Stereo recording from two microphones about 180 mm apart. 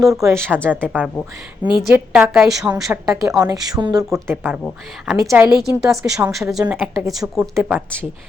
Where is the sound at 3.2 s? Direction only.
20° right (ahead or behind).